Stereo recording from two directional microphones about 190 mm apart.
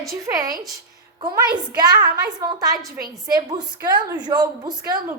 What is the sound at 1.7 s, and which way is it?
A woman's voice, 20° right (ahead or behind).